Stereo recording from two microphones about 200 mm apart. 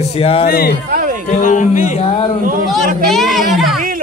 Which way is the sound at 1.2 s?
40° left (ahead or behind).